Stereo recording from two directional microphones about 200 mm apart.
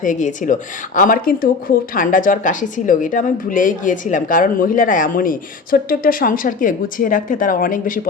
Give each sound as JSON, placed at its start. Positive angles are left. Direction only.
{"t": 0.0, "sound": "speech", "side_deg": 40}